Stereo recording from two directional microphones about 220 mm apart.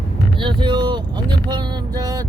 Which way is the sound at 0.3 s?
20° right (ahead or behind).